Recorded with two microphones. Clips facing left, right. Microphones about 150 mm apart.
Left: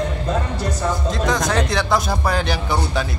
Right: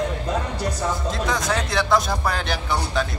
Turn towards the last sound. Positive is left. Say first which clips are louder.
# left 2 dB
turn(degrees=0)  # may be behind; listen again after turning